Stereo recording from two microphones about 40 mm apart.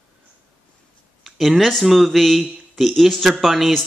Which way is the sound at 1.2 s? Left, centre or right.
Centre.